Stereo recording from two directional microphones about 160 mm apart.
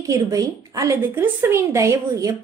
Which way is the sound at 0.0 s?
20° right (ahead or behind).